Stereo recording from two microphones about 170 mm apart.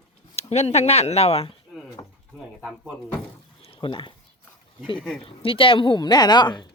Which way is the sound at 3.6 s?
30° left (ahead or behind).